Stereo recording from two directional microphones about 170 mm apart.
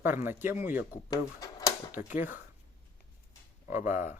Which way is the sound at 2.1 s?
10° right (ahead or behind).